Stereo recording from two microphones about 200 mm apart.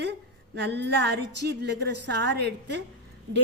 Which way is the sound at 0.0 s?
55° right (ahead or behind).